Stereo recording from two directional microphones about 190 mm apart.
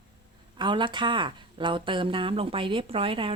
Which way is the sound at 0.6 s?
25° right (ahead or behind).